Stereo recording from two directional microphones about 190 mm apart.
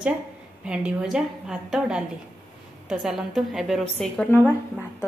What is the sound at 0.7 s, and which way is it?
A woman's voice, 5° right (ahead or behind).